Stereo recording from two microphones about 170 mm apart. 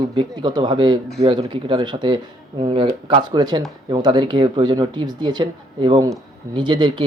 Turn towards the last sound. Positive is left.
turn(degrees=-25)  # may be behind; listen again after turning